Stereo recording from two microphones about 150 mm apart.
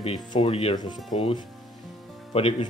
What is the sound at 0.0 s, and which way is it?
Speech, 35° left (ahead or behind).